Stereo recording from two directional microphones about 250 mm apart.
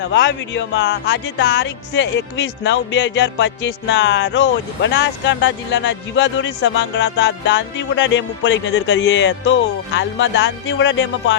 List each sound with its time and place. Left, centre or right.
0.0 s speech: left